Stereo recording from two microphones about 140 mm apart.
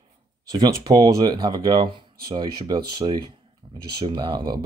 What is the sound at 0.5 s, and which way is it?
Speech, 30° right (ahead or behind).